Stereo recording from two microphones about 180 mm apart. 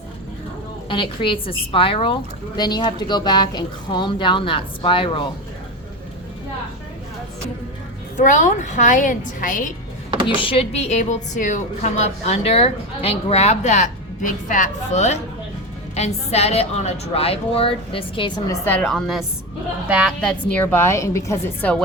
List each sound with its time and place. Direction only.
0.9 s speech: 30° left (ahead or behind)
8.1 s a woman's voice: 45° left (ahead or behind)
10.2 s speech: 30° left (ahead or behind)
18.6 s a woman's voice: 10° left (ahead or behind); by 20.1 s 5° right (ahead or behind)
20.2 s a woman's voice: 10° left (ahead or behind)